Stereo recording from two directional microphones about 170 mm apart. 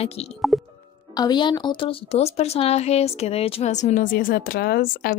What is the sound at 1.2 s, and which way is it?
Speech, 25° left (ahead or behind).